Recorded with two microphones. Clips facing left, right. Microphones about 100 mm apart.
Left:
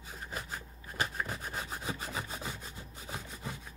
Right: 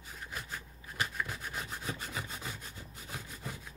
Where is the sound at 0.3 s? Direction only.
35° left (ahead or behind).